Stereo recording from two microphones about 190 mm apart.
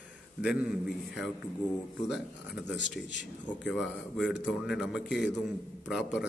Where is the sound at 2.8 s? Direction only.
70° left (ahead or behind).